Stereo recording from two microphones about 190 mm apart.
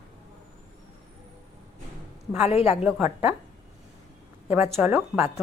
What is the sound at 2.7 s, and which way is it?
Speech, 10° right (ahead or behind).